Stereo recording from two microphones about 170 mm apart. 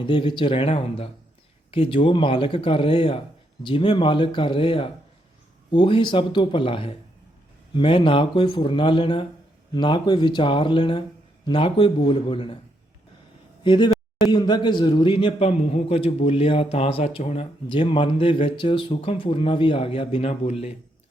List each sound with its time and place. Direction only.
0.0 s a man's voice: 30° left (ahead or behind)
13.7 s a man's voice: 25° left (ahead or behind)